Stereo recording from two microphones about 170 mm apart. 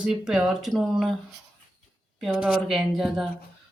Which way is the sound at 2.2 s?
5° right (ahead or behind).